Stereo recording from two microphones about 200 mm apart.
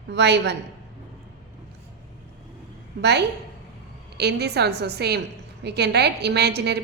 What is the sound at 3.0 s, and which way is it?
A woman's voice, 55° right (ahead or behind).